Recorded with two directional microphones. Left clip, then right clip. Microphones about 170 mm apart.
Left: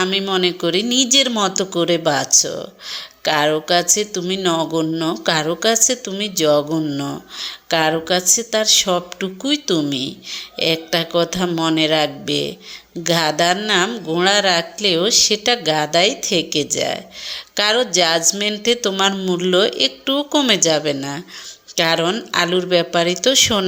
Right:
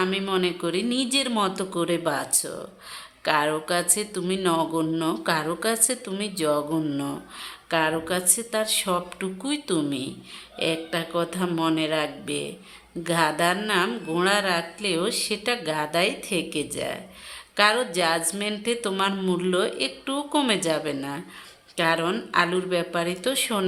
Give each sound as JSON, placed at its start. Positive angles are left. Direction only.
{"t": 0.0, "sound": "speech", "side_deg": 25}
{"t": 6.7, "sound": "speech", "side_deg": 15}